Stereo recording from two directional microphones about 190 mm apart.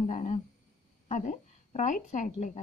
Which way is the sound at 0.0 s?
35° left (ahead or behind).